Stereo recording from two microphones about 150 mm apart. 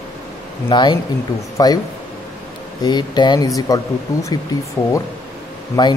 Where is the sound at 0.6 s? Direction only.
30° left (ahead or behind).